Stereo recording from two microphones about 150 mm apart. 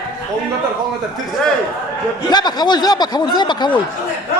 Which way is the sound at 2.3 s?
30° left (ahead or behind).